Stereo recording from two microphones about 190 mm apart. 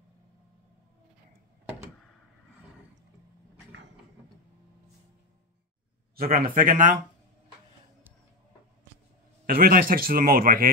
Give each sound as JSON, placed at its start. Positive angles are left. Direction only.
{"t": 6.1, "sound": "speech", "side_deg": -50}
{"t": 9.5, "sound": "speech", "side_deg": -50}